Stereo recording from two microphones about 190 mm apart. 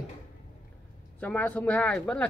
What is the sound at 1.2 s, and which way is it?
Speech, 10° left (ahead or behind).